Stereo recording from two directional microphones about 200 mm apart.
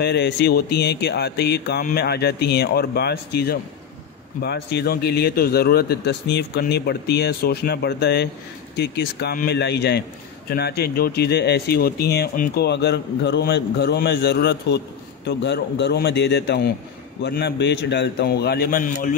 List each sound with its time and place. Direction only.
0.0 s a man's voice: 60° left (ahead or behind)